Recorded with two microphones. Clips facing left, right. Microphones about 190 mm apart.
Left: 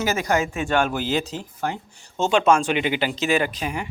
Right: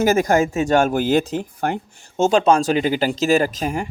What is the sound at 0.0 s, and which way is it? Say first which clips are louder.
Speech: right 6 dB; 50° right (ahead or behind).